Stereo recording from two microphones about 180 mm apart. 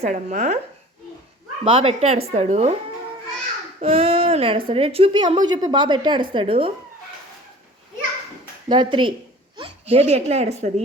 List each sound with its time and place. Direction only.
0.0 s speech: 40° right (ahead or behind)
1.6 s speech: 30° right (ahead or behind)
3.8 s speech: 35° right (ahead or behind)
8.7 s a child's voice: 25° right (ahead or behind)